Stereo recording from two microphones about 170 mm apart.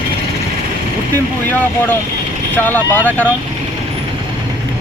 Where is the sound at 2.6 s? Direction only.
10° left (ahead or behind).